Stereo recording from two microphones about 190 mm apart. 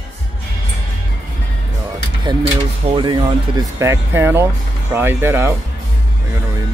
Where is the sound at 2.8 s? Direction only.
25° right (ahead or behind).